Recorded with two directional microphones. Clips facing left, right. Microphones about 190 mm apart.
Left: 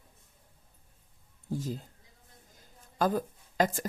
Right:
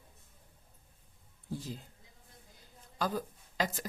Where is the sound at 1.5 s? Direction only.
45° left (ahead or behind).